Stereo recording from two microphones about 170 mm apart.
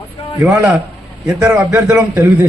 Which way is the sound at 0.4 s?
20° right (ahead or behind).